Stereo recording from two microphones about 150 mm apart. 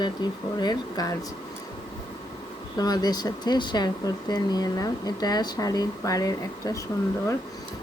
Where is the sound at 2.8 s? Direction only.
25° left (ahead or behind).